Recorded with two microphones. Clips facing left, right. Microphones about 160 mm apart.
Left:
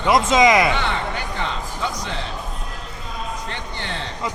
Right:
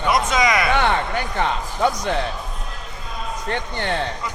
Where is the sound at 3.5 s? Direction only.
55° right (ahead or behind).